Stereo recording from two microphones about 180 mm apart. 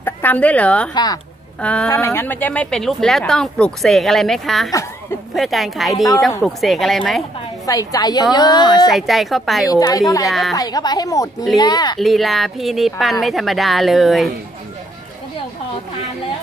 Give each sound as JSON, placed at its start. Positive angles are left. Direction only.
{"t": 0.0, "sound": "speech", "side_deg": 10}
{"t": 0.9, "sound": "a woman's voice", "side_deg": 20}
{"t": 1.6, "sound": "a woman's voice", "side_deg": 5}
{"t": 7.6, "sound": "a woman's voice", "side_deg": 20}
{"t": 8.9, "sound": "a woman's voice", "side_deg": 0}
{"t": 9.7, "sound": "a woman's voice", "side_deg": 20}
{"t": 12.0, "sound": "a woman's voice", "side_deg": 0}